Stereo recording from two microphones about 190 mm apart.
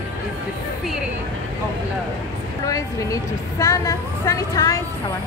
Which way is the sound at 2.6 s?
15° left (ahead or behind).